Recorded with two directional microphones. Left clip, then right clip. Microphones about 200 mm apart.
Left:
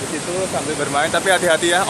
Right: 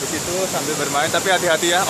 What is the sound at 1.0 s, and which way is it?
Speech, 15° left (ahead or behind).